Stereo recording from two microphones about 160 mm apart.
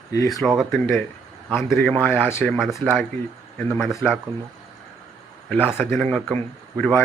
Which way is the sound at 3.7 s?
Centre (ahead or behind).